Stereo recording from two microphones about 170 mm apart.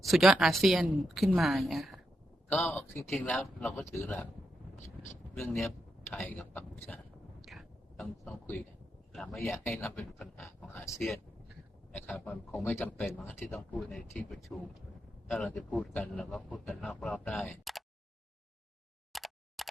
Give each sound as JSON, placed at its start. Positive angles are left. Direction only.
{"t": 0.0, "sound": "a man's voice", "side_deg": 0}
{"t": 3.1, "sound": "a man's voice", "side_deg": 0}
{"t": 6.1, "sound": "a man's voice", "side_deg": 10}
{"t": 7.4, "sound": "a sound", "side_deg": 0}
{"t": 9.1, "sound": "a man's voice", "side_deg": 5}
{"t": 10.4, "sound": "a man's voice", "side_deg": 15}
{"t": 19.1, "sound": "plop", "side_deg": 0}